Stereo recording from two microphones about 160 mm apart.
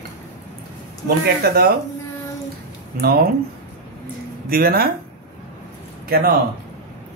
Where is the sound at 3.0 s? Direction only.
70° right (ahead or behind).